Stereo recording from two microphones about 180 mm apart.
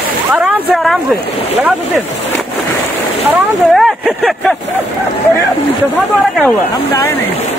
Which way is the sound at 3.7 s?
Centre (ahead or behind).